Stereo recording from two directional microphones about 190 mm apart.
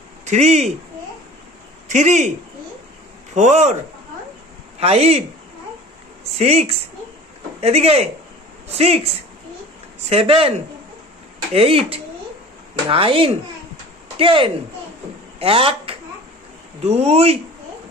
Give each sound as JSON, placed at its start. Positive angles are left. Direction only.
{"t": 0.2, "sound": "a man's voice", "side_deg": -35}
{"t": 1.9, "sound": "speech", "side_deg": -40}
{"t": 3.3, "sound": "speech", "side_deg": -40}
{"t": 4.7, "sound": "speech", "side_deg": -35}
{"t": 6.3, "sound": "speech", "side_deg": -35}